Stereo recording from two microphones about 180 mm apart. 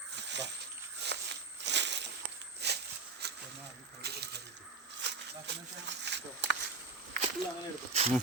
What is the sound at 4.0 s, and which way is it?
Coin, 65° right (ahead or behind).